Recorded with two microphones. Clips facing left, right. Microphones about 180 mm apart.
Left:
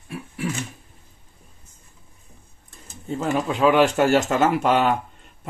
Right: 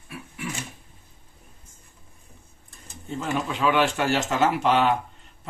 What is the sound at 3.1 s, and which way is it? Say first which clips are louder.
Speech: left 4 dB; 40° left (ahead or behind).